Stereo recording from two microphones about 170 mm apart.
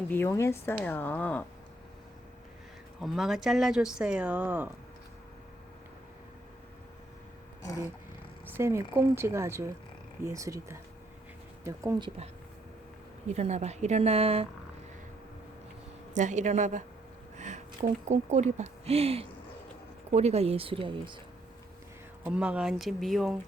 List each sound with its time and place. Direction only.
0.1 s speech: 15° left (ahead or behind)
3.0 s speech: centre (ahead or behind)
8.4 s a woman's voice: 15° right (ahead or behind); by 14.4 s 35° right (ahead or behind)
16.1 s a woman's voice: 45° right (ahead or behind); by 21.2 s 30° right (ahead or behind)
22.2 s speech: 5° right (ahead or behind)